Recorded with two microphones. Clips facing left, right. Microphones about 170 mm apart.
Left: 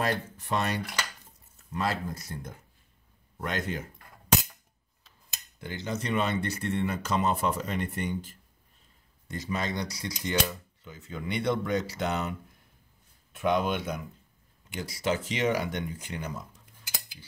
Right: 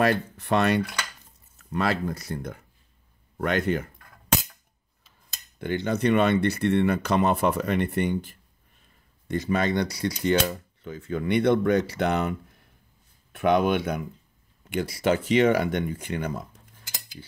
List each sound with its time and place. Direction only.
0.0 s speech: 65° right (ahead or behind)
5.6 s speech: 60° right (ahead or behind)